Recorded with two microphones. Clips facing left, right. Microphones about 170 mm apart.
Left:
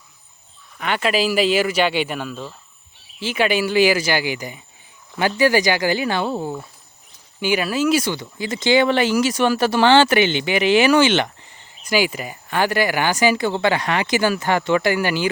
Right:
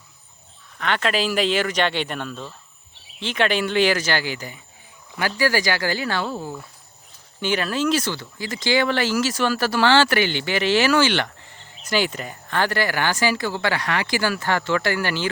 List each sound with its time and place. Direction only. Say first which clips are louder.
0.8 s speech: left 2 dB; 10° left (ahead or behind)
7.3 s speech: left 3 dB; 10° left (ahead or behind)